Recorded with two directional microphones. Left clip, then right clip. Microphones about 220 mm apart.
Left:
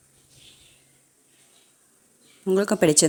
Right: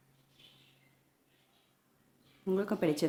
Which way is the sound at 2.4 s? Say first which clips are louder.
Left 12 dB; 35° left (ahead or behind).